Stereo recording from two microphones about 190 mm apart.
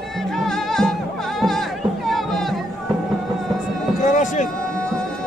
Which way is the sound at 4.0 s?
40° left (ahead or behind).